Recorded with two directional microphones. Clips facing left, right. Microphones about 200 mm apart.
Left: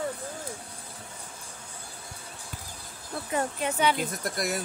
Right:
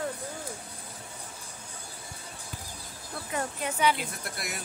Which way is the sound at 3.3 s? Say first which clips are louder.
Left 4 dB; 30° left (ahead or behind).